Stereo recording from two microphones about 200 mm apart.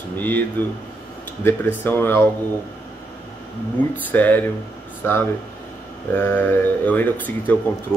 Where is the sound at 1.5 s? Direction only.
10° left (ahead or behind).